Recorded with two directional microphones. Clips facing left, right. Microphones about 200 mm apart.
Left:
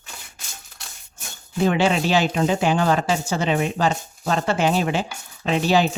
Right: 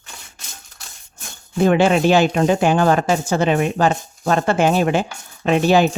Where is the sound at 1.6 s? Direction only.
50° right (ahead or behind).